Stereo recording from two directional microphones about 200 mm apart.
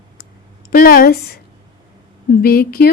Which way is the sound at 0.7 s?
45° left (ahead or behind).